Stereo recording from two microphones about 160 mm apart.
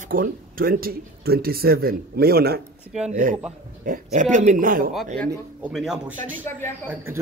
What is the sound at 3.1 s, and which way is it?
Speech, 60° right (ahead or behind).